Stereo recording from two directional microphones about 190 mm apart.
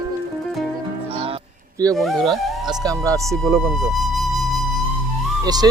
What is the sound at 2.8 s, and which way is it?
Speech, 15° right (ahead or behind).